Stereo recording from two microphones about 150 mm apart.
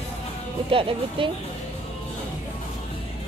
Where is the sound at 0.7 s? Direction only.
35° right (ahead or behind).